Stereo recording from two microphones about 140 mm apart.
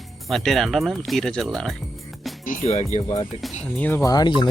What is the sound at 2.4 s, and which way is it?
Speech, 70° left (ahead or behind).